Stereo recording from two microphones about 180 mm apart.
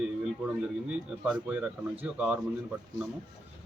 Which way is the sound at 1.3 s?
5° right (ahead or behind).